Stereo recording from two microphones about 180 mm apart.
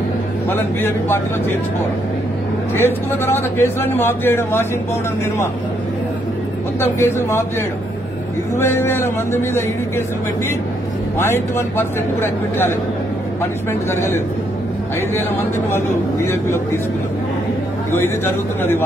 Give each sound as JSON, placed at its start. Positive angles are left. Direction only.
{"t": 0.5, "sound": "a man's voice", "side_deg": 10}
{"t": 2.7, "sound": "a man's voice", "side_deg": 10}
{"t": 6.8, "sound": "a man's voice", "side_deg": 15}
{"t": 8.5, "sound": "a man's voice", "side_deg": 15}
{"t": 11.1, "sound": "a man's voice", "side_deg": 15}
{"t": 13.8, "sound": "a man's voice", "side_deg": 15}
{"t": 16.3, "sound": "a man's voice", "side_deg": 15}
{"t": 17.9, "sound": "a man's voice", "side_deg": 10}